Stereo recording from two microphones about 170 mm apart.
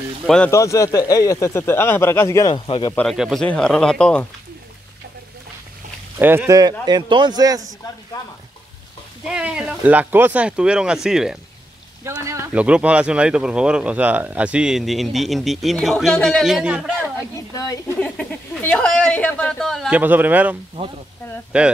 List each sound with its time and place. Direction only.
0.5 s speech: 20° left (ahead or behind)
2.5 s speech: 30° left (ahead or behind)
2.9 s speech: 10° left (ahead or behind)
3.2 s speech: 5° right (ahead or behind)
6.1 s speech: 15° right (ahead or behind)
8.1 s speech: 25° left (ahead or behind)
9.3 s speech: 5° right (ahead or behind)
12.0 s speech: 15° right (ahead or behind)
17.2 s speech: 20° left (ahead or behind); by 19.9 s centre (ahead or behind)
19.9 s a man's voice: 10° right (ahead or behind)
20.8 s speech: 30° right (ahead or behind)
21.5 s a man's voice: 5° right (ahead or behind)